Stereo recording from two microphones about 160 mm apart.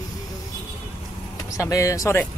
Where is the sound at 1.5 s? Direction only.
20° left (ahead or behind).